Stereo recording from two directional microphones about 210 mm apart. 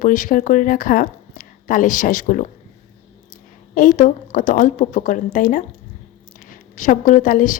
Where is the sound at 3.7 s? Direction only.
40° left (ahead or behind).